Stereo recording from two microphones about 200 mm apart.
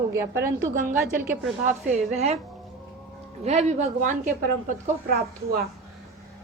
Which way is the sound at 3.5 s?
35° right (ahead or behind).